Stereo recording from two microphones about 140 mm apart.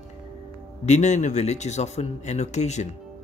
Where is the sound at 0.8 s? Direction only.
55° left (ahead or behind).